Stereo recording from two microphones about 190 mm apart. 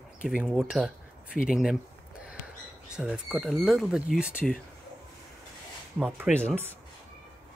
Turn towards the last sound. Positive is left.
turn(degrees=-10)  # may be behind; listen again after turning